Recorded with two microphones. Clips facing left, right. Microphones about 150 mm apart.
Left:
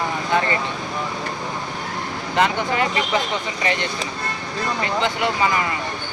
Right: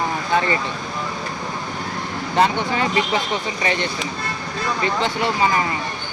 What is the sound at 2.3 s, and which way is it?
Speech, 35° right (ahead or behind).